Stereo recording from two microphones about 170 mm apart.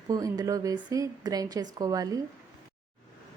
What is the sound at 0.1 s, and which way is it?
A woman's voice, 20° right (ahead or behind).